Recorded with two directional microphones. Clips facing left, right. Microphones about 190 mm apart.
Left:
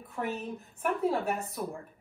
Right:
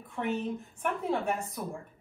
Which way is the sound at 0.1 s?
5° left (ahead or behind).